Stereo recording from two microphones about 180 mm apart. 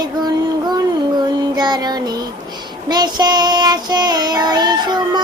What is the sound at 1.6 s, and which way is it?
Child singing, 25° right (ahead or behind).